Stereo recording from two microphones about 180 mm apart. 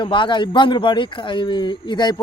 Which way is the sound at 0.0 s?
25° left (ahead or behind).